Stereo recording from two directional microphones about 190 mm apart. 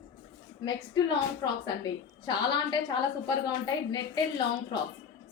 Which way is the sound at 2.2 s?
25° left (ahead or behind).